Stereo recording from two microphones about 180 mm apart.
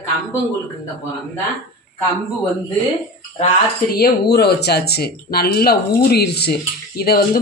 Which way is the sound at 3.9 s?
60° left (ahead or behind).